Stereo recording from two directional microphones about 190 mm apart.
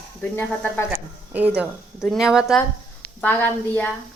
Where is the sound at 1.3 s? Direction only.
10° right (ahead or behind).